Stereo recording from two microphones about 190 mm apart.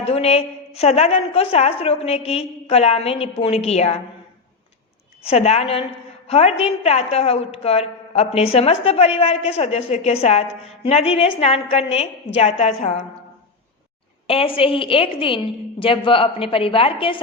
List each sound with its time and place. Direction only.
0.0 s a woman's voice: 30° left (ahead or behind)
5.2 s a woman's voice: 35° left (ahead or behind)
14.3 s a woman's voice: 30° left (ahead or behind)